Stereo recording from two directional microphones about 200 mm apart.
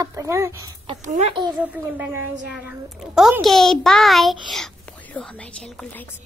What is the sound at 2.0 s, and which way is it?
A child's voice, 10° right (ahead or behind).